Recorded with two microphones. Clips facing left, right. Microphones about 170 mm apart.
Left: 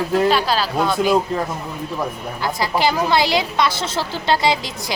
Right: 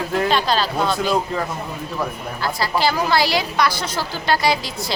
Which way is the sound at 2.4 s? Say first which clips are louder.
Left 1 dB; 20° left (ahead or behind).